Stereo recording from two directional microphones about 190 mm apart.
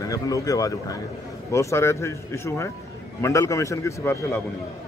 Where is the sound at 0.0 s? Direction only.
15° left (ahead or behind).